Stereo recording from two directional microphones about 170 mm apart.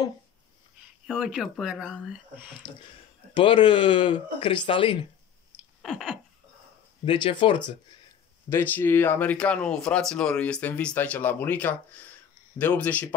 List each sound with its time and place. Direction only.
1.0 s speech: 5° right (ahead or behind)
3.3 s speech: 30° left (ahead or behind)
5.8 s a sound: centre (ahead or behind)
7.1 s speech: 30° left (ahead or behind)
8.5 s speech: 15° left (ahead or behind)